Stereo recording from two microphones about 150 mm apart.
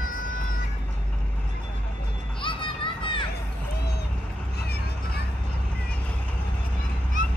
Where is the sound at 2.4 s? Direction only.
35° left (ahead or behind).